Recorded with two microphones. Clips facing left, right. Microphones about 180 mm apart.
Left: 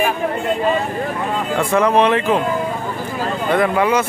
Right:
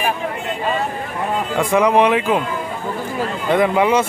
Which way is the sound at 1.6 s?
15° right (ahead or behind).